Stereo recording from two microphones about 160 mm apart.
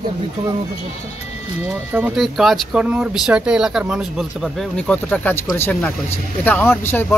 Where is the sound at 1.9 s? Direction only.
10° right (ahead or behind).